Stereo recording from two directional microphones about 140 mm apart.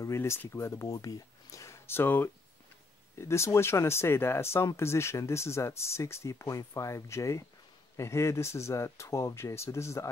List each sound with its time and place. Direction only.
0.0 s speech: 20° left (ahead or behind)